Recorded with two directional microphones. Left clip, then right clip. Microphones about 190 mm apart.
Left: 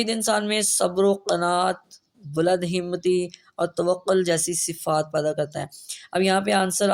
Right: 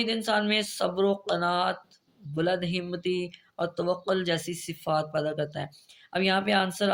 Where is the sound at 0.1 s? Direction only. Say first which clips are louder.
Left 3 dB; 55° left (ahead or behind).